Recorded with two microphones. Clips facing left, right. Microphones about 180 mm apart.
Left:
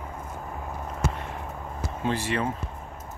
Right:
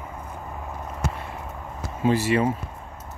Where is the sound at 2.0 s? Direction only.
10° right (ahead or behind).